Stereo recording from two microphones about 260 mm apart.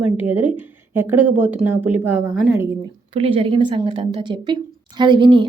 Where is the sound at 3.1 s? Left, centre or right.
Right.